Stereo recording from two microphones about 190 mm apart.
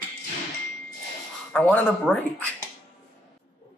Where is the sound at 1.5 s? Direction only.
5° left (ahead or behind).